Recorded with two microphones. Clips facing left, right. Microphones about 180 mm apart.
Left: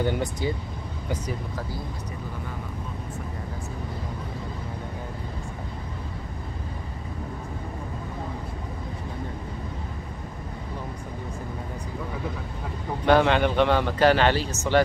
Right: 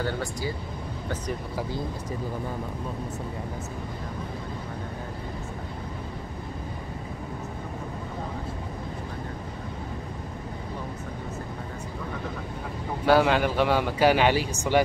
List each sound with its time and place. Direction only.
0.0 s speech: 20° left (ahead or behind)
13.0 s speech: 5° right (ahead or behind)